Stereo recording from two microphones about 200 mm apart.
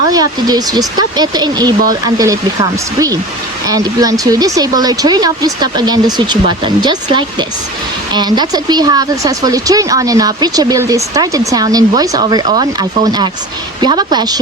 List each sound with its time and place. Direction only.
0.1 s speech: 20° right (ahead or behind)